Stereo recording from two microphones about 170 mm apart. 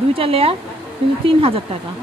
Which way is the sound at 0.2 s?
35° right (ahead or behind).